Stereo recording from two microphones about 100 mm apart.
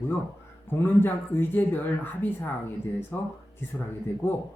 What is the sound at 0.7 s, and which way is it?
Speech, 20° left (ahead or behind).